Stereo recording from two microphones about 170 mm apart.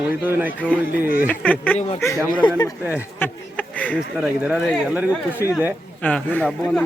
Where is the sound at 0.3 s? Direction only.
10° right (ahead or behind).